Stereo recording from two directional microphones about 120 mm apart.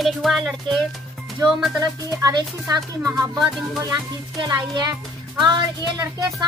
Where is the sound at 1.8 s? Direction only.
30° right (ahead or behind).